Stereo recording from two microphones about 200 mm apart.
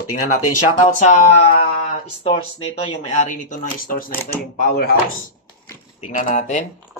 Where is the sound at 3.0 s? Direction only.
40° left (ahead or behind).